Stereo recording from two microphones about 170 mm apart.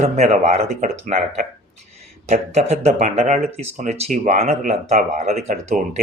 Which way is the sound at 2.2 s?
40° right (ahead or behind).